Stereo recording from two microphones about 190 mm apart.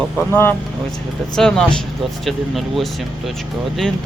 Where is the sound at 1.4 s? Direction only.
5° left (ahead or behind).